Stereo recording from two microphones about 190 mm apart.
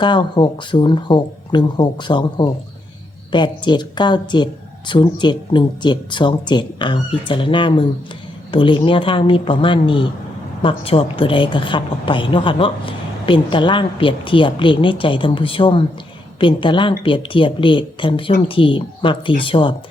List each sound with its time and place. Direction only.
0.0 s a woman's voice: 25° left (ahead or behind)